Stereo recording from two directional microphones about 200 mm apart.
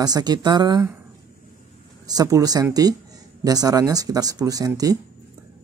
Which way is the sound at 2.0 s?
20° right (ahead or behind).